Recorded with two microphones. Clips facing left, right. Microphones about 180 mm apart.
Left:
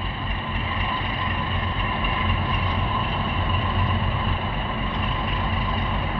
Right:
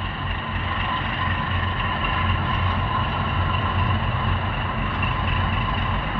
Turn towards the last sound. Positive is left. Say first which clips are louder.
# even
turn(degrees=15)  # may be behind; listen again after turning